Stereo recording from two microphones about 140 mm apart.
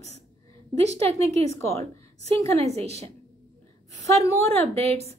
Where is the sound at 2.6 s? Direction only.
50° right (ahead or behind).